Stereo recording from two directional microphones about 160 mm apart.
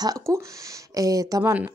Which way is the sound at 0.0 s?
20° right (ahead or behind).